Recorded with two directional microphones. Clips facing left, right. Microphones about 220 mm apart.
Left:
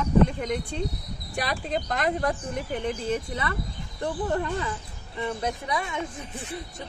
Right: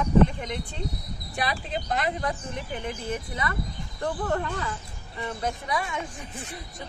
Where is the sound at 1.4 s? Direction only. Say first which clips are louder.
Left 2 dB; 45° left (ahead or behind).